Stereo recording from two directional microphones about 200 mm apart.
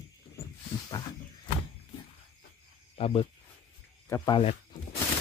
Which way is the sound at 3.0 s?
30° left (ahead or behind).